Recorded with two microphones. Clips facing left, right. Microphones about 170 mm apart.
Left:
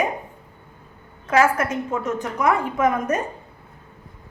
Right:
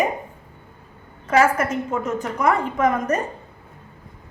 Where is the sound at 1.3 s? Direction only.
Centre (ahead or behind).